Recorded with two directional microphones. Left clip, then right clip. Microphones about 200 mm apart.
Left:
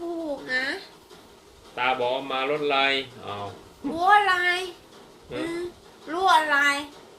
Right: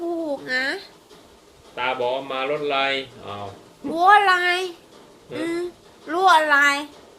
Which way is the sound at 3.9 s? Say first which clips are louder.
Right 4 dB; 55° right (ahead or behind).